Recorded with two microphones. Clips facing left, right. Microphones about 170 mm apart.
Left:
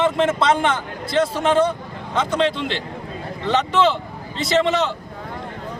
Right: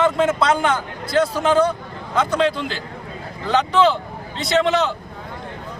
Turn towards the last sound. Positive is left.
turn(degrees=0)  # may be behind; listen again after turning